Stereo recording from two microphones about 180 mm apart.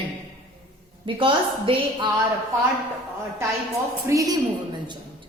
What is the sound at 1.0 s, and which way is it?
A woman's voice, 30° right (ahead or behind).